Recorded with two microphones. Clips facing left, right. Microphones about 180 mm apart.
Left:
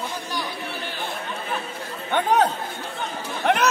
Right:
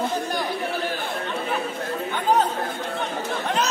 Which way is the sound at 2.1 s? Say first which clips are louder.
Left 2 dB; 70° left (ahead or behind).